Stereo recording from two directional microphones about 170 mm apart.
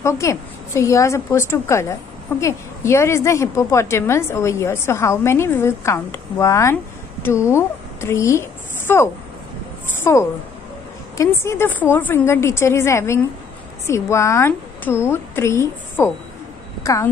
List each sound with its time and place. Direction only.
0.0 s a woman's voice: 15° left (ahead or behind)